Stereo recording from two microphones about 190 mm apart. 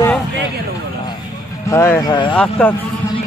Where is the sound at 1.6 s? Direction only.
15° left (ahead or behind).